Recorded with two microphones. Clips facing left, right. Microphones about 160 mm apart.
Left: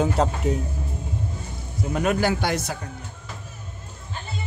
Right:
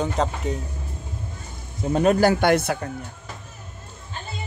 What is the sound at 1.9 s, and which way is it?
Speech, 35° right (ahead or behind).